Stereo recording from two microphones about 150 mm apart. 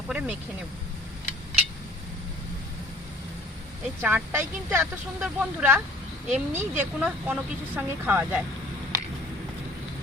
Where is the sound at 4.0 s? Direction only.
15° right (ahead or behind).